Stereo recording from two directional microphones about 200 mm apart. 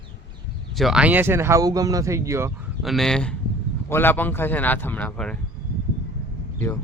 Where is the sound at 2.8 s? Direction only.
Centre (ahead or behind).